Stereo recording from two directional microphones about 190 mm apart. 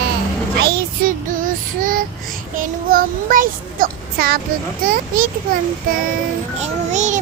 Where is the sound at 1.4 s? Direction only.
45° right (ahead or behind).